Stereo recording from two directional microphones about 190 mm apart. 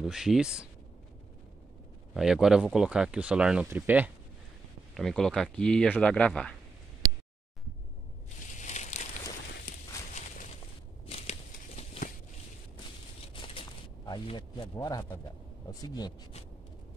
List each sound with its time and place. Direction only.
0.0 s speech: centre (ahead or behind)
2.1 s speech: centre (ahead or behind)
4.9 s speech: 5° left (ahead or behind)
8.5 s crumpling: 40° left (ahead or behind)
9.7 s walk: 40° left (ahead or behind)
11.1 s a sound: 35° left (ahead or behind)
13.3 s a sound: 25° left (ahead or behind)
15.7 s speech: 20° left (ahead or behind)